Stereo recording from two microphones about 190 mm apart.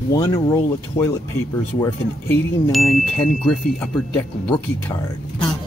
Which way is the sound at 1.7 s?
15° left (ahead or behind).